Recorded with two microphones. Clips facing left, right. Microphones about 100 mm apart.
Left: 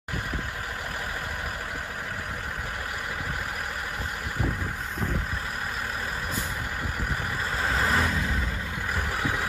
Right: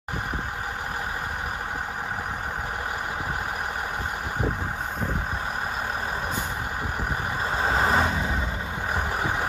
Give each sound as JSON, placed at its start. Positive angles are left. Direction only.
{"t": 7.6, "sound": "vehicle", "side_deg": -30}